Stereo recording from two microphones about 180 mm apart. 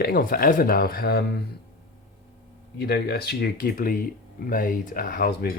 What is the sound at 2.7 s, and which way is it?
Speech, 60° left (ahead or behind).